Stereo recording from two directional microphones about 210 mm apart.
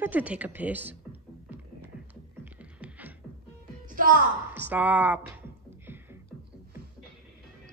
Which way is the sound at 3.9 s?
40° right (ahead or behind).